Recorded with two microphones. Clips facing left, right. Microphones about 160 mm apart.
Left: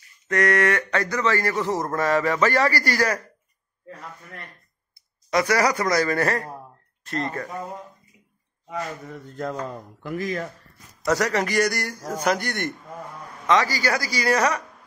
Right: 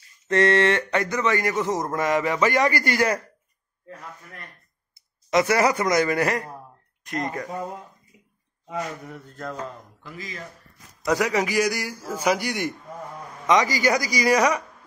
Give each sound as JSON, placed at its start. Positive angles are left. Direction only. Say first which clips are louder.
{"t": 0.3, "sound": "a man's voice", "louder": "right 2 dB", "side_deg": -25}
{"t": 4.9, "sound": "a man's voice", "louder": "right 2 dB", "side_deg": -20}
{"t": 8.6, "sound": "a man's voice", "louder": "even", "side_deg": -15}
{"t": 10.0, "sound": "speech", "louder": "left 10 dB", "side_deg": 55}
{"t": 11.1, "sound": "a man's voice", "louder": "even", "side_deg": -10}